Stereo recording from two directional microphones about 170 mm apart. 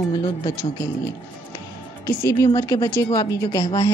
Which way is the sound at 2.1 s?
15° left (ahead or behind).